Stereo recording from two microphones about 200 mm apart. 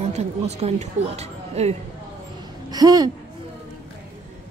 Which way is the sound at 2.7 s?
20° right (ahead or behind).